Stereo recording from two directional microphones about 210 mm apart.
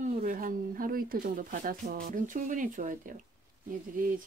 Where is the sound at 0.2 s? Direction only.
40° right (ahead or behind).